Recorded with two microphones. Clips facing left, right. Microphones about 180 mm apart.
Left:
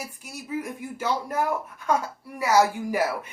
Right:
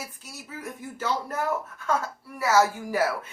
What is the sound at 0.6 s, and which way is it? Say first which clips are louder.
Speech: left 2 dB; 10° left (ahead or behind).